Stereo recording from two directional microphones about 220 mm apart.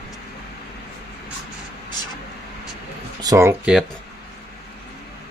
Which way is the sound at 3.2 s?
15° right (ahead or behind).